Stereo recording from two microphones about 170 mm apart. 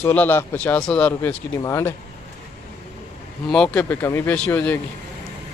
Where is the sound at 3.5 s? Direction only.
5° left (ahead or behind).